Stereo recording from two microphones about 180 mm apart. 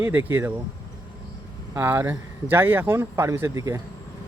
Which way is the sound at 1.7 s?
10° right (ahead or behind).